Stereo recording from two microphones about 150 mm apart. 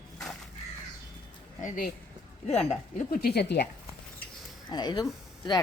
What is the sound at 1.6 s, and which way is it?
Speech, 70° left (ahead or behind).